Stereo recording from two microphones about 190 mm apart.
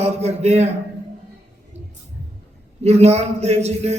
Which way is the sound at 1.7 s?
35° right (ahead or behind).